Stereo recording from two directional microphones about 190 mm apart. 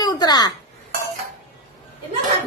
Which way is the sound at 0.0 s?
20° left (ahead or behind).